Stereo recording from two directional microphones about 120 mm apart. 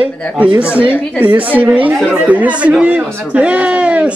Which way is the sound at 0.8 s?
15° left (ahead or behind).